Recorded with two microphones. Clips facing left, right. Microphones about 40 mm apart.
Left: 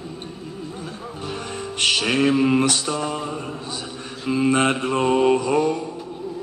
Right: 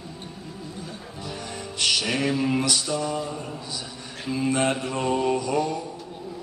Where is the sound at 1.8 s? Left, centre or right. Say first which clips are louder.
Left 5 dB; left.